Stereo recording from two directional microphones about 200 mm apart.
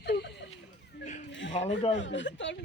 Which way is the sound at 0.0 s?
55° left (ahead or behind).